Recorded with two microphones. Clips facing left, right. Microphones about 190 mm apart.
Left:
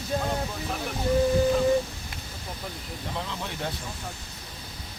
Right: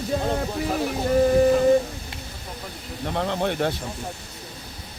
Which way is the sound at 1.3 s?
70° right (ahead or behind).